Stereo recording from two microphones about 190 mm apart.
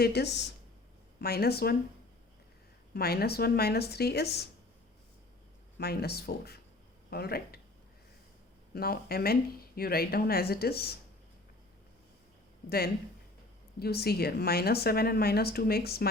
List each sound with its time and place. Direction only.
0.0 s speech: 60° left (ahead or behind)
2.9 s speech: 55° left (ahead or behind)
5.7 s speech: 55° left (ahead or behind)
8.7 s a woman's voice: 55° left (ahead or behind)
12.6 s speech: 55° left (ahead or behind)